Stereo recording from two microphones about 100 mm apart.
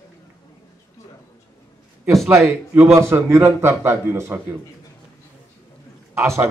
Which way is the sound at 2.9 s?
25° right (ahead or behind).